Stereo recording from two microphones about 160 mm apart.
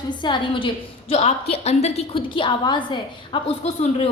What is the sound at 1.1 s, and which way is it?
A woman's voice, 40° left (ahead or behind).